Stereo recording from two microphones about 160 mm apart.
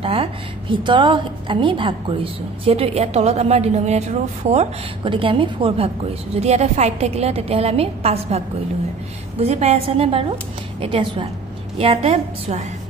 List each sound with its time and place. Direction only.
0.0 s a woman's voice: 35° right (ahead or behind)
9.4 s a woman's voice: 40° right (ahead or behind)